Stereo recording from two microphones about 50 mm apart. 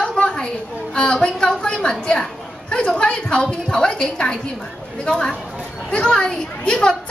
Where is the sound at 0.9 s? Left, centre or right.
Centre.